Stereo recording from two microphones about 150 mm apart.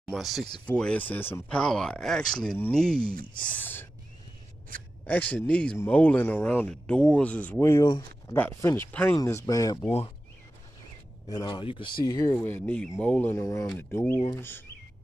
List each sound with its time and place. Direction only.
0.0 s speech: centre (ahead or behind)
5.0 s speech: 10° left (ahead or behind)
11.2 s speech: 25° left (ahead or behind)